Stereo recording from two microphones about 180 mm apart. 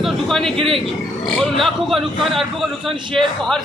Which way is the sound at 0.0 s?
Centre (ahead or behind).